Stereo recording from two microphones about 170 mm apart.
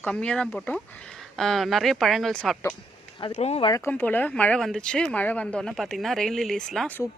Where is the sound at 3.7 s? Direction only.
15° left (ahead or behind).